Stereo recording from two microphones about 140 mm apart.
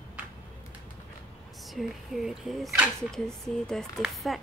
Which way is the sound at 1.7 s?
Centre (ahead or behind).